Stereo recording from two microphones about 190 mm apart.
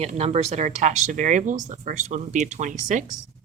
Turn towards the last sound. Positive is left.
turn(degrees=-40)  # may be behind; listen again after turning